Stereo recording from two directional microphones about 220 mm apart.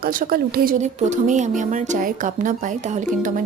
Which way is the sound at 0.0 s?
40° right (ahead or behind).